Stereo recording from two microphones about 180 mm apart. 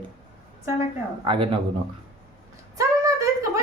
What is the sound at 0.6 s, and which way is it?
Speech, 15° right (ahead or behind).